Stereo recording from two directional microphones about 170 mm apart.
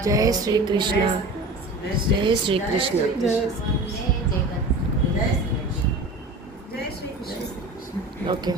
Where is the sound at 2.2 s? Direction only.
30° right (ahead or behind).